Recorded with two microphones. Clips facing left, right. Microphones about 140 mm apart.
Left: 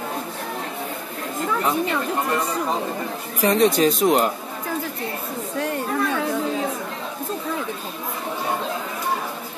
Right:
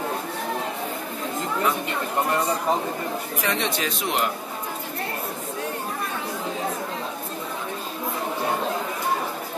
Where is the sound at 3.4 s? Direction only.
40° left (ahead or behind).